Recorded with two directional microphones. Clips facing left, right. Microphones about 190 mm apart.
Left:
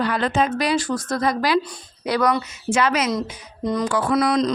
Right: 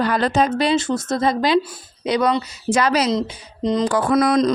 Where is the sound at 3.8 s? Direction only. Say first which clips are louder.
Right 2 dB; 45° right (ahead or behind).